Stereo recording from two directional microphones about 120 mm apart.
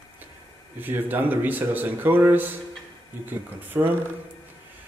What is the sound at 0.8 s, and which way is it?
Speech, 15° right (ahead or behind).